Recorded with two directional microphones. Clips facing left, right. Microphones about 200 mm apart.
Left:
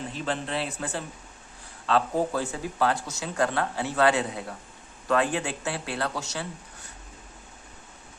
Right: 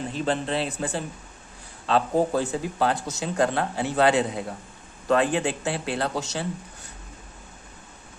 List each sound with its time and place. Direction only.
0.2 s speech: 30° right (ahead or behind)